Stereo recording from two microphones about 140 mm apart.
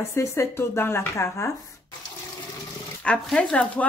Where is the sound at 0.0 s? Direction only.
20° left (ahead or behind).